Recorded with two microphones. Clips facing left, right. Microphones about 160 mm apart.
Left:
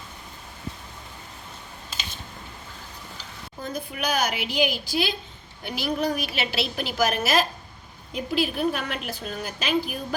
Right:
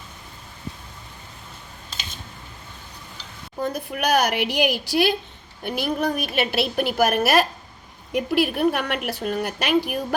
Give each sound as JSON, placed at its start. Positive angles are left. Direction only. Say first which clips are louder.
{"t": 3.6, "sound": "a woman's voice", "louder": "right 5 dB", "side_deg": -65}